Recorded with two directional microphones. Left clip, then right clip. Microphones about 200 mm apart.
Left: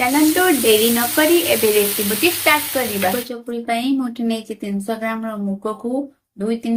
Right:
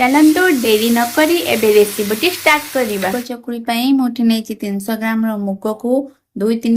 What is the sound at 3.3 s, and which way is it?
Speech, 60° right (ahead or behind).